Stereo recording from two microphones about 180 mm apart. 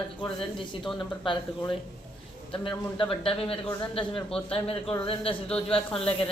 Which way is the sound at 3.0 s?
30° left (ahead or behind).